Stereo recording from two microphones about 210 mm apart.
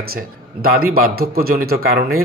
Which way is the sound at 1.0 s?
45° right (ahead or behind).